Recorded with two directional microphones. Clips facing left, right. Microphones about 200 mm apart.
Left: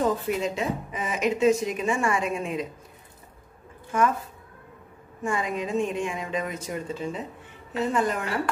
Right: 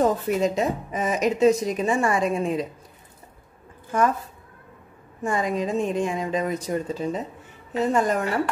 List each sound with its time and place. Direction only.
0.0 s a woman's voice: 40° right (ahead or behind)
5.2 s a woman's voice: 40° right (ahead or behind)